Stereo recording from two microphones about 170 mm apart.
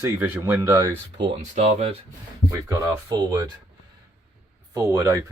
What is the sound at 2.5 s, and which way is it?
Speech, 20° right (ahead or behind).